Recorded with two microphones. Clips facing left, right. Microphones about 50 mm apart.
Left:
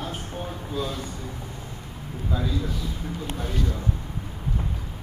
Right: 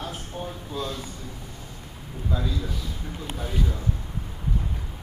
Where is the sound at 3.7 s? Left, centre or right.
Centre.